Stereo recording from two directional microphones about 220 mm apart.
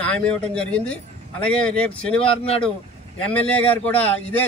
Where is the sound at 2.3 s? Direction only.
25° left (ahead or behind).